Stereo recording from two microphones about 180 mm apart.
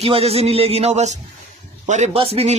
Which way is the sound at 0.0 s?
35° right (ahead or behind).